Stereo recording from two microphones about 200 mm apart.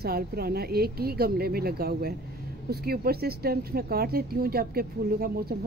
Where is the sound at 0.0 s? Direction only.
50° right (ahead or behind).